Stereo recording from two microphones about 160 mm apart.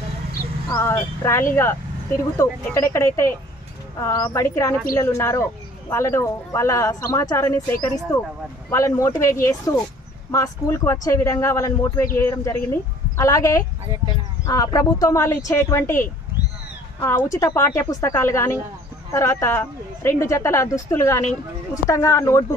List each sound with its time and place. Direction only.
0.7 s speech: 15° left (ahead or behind)